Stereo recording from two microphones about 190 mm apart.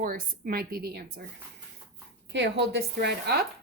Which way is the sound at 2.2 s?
65° right (ahead or behind).